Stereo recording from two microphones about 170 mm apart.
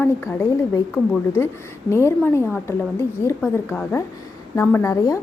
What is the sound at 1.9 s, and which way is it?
A woman's voice, 15° left (ahead or behind).